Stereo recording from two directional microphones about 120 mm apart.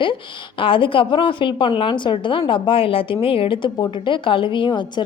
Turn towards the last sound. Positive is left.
turn(degrees=40)  # may be behind; listen again after turning